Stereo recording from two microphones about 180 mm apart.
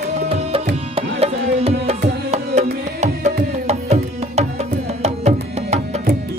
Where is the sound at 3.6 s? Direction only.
35° right (ahead or behind).